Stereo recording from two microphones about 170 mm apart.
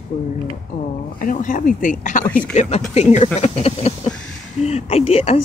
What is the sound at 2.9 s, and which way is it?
Speech, 40° left (ahead or behind).